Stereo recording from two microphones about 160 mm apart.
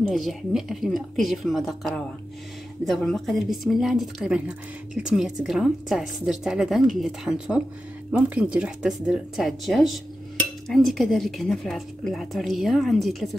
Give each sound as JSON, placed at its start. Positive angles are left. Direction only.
{"t": 0.0, "sound": "a woman's voice", "side_deg": 0}